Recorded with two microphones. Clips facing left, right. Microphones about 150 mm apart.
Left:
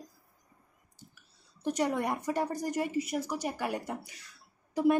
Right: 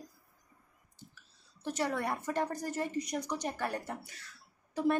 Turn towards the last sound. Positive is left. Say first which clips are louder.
# left 4 dB
turn(degrees=15)  # may be behind; listen again after turning